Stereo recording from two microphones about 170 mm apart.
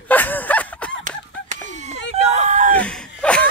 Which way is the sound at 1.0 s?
45° right (ahead or behind).